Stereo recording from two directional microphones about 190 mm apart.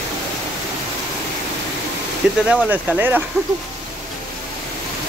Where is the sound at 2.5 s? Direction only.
5° right (ahead or behind).